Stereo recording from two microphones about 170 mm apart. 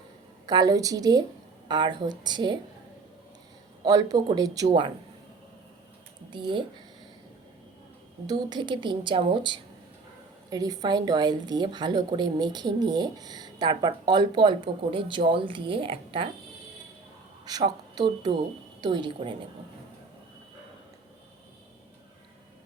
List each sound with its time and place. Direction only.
0.4 s a woman's voice: 20° right (ahead or behind)
3.8 s a woman's voice: 20° right (ahead or behind)
6.3 s a woman's voice: 30° right (ahead or behind)
8.3 s a woman's voice: 25° right (ahead or behind)
17.4 s a woman's voice: 25° right (ahead or behind)